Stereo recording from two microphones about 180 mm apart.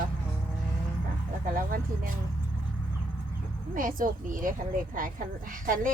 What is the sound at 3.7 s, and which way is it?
Speech, 50° right (ahead or behind).